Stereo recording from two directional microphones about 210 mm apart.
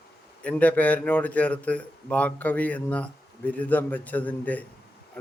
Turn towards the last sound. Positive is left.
turn(degrees=5)  # may be behind; listen again after turning